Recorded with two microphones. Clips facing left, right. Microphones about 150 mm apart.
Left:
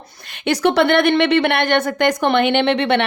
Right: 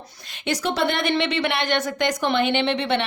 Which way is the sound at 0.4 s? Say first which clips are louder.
Left 8 dB; 65° left (ahead or behind).